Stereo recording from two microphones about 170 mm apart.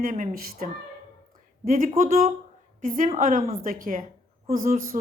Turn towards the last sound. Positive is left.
turn(degrees=-55)  # may be behind; listen again after turning